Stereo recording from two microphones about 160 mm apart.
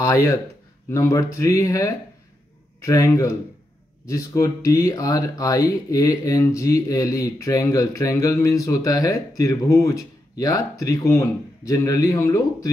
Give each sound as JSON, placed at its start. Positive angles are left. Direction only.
{"t": 0.0, "sound": "speech", "side_deg": 20}